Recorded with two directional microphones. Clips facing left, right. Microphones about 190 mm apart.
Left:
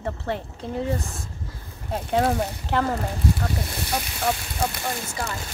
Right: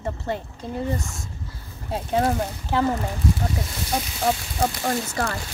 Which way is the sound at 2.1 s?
5° right (ahead or behind).